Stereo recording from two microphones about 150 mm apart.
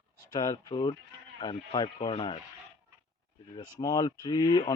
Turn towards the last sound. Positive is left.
turn(degrees=30)  # may be behind; listen again after turning